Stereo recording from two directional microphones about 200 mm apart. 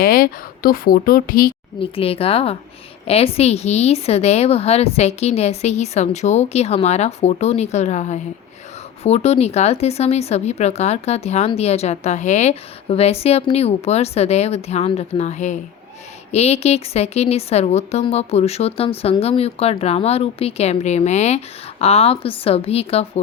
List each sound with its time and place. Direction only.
0.0 s a woman's voice: 45° left (ahead or behind)
1.8 s a woman's voice: 30° left (ahead or behind)